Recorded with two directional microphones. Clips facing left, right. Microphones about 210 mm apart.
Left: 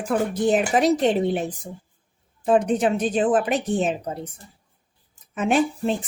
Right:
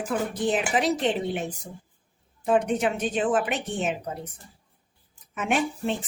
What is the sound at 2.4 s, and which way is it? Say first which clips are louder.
A woman's voice: left 4 dB; 35° left (ahead or behind).